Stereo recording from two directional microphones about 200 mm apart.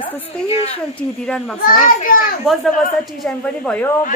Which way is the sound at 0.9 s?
5° left (ahead or behind).